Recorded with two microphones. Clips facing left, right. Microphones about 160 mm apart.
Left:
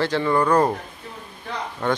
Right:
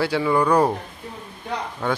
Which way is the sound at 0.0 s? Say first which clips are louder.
Even; 10° right (ahead or behind).